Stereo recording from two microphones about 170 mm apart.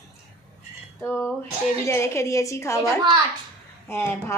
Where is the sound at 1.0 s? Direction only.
15° left (ahead or behind).